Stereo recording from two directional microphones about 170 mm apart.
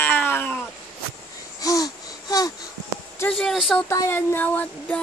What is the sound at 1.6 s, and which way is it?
Wheeze, 20° left (ahead or behind).